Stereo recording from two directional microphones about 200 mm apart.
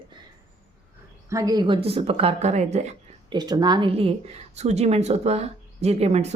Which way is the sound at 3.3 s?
20° right (ahead or behind).